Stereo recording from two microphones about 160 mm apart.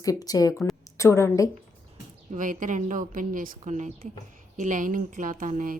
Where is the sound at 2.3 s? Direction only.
55° right (ahead or behind).